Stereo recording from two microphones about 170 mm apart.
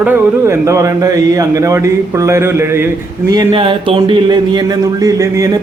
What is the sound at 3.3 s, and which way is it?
A man's voice, 25° right (ahead or behind).